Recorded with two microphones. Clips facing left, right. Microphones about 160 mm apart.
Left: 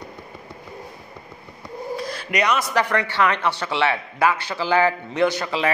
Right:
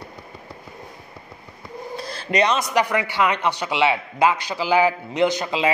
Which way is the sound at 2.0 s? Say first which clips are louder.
Right 4 dB; 30° right (ahead or behind).